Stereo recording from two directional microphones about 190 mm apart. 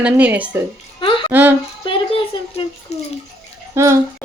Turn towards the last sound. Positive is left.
turn(degrees=-15)  # may be behind; listen again after turning